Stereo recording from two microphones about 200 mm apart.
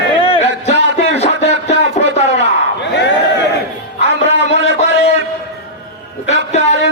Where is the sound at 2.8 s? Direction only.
60° left (ahead or behind).